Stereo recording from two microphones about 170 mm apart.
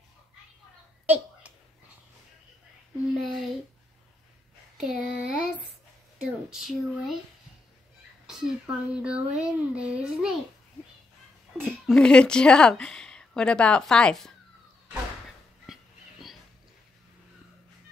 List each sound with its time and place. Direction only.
1.0 s a sound: 10° right (ahead or behind)
3.2 s a woman's voice: centre (ahead or behind)
4.7 s a woman's voice: 5° right (ahead or behind)
6.5 s a woman's voice: centre (ahead or behind)
8.3 s a woman's voice: 5° right (ahead or behind)
11.6 s a woman's voice: 5° left (ahead or behind)
15.6 s dog: centre (ahead or behind)